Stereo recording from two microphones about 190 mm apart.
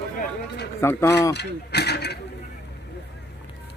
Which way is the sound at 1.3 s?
60° left (ahead or behind).